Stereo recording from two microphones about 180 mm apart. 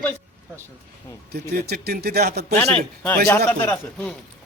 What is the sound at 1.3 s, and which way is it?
Speech, 60° right (ahead or behind).